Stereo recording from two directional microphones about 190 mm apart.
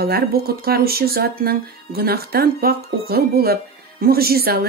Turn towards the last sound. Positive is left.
turn(degrees=-55)  # may be behind; listen again after turning